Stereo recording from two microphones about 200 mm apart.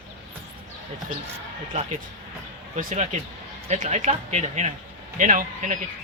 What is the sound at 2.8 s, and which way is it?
Speech, 40° right (ahead or behind).